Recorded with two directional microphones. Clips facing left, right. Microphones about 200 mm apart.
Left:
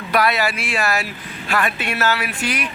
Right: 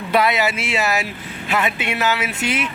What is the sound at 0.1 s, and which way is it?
Speech, 20° right (ahead or behind).